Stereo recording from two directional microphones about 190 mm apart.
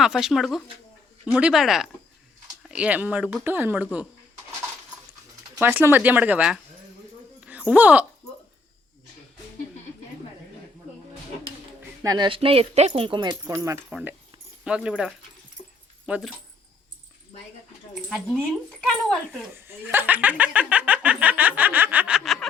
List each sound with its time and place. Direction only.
0.0 s speech: centre (ahead or behind)
5.5 s speech: 10° right (ahead or behind)
7.4 s a sound: 5° right (ahead or behind)
12.0 s speech: 20° right (ahead or behind); by 16.3 s 5° right (ahead or behind)
18.1 s speech: centre (ahead or behind)
19.5 s speech: 10° right (ahead or behind)